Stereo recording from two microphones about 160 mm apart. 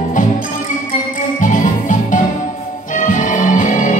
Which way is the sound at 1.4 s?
55° left (ahead or behind).